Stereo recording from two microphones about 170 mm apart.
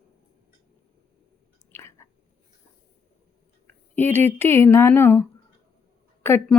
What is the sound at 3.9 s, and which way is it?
Speech, 10° left (ahead or behind).